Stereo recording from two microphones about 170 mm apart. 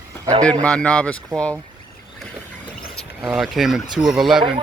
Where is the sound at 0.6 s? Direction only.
5° left (ahead or behind).